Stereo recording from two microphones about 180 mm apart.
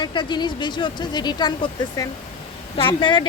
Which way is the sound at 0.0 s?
25° left (ahead or behind).